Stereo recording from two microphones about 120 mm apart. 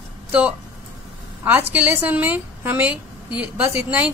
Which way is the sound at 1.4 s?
15° right (ahead or behind).